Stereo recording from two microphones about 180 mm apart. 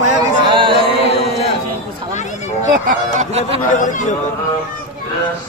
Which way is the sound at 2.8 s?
40° right (ahead or behind).